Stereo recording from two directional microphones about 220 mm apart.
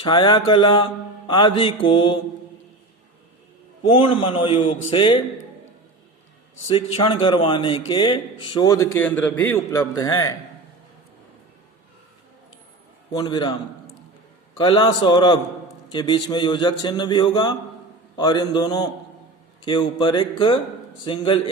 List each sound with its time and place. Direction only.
0.0 s a man's voice: 20° left (ahead or behind)
3.8 s a man's voice: 25° left (ahead or behind)
6.7 s a man's voice: 25° left (ahead or behind)
13.1 s a man's voice: 20° left (ahead or behind)
14.6 s a man's voice: 20° left (ahead or behind)